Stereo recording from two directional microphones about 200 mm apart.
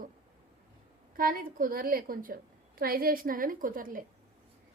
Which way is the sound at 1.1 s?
45° right (ahead or behind).